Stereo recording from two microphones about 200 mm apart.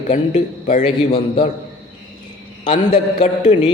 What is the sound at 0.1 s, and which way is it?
Speech, 35° left (ahead or behind).